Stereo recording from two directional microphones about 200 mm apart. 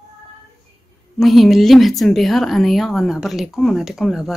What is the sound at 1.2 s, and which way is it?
Speech, centre (ahead or behind).